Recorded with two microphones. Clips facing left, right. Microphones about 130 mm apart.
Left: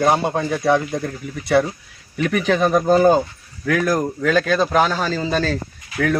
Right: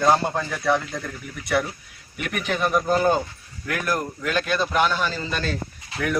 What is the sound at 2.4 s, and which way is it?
A man's voice, 35° left (ahead or behind).